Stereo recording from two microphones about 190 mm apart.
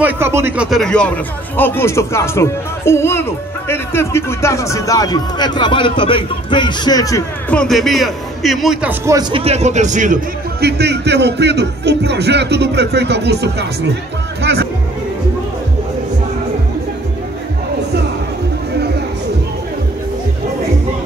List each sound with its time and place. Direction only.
0.0 s speech: 10° right (ahead or behind); by 7.5 s 15° left (ahead or behind)
7.5 s a man's voice: centre (ahead or behind)
9.3 s a man's voice: 30° right (ahead or behind); by 13.7 s 60° right (ahead or behind)
14.4 s music: 60° right (ahead or behind)